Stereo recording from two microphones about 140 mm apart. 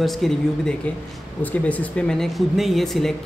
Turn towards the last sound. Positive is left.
turn(degrees=0)  # may be behind; listen again after turning